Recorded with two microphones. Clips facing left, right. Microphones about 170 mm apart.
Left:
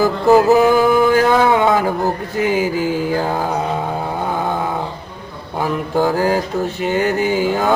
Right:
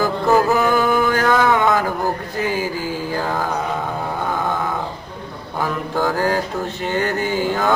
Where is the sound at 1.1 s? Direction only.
15° left (ahead or behind).